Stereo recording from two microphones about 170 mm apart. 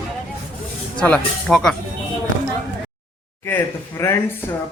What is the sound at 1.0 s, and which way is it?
Speech, 5° left (ahead or behind).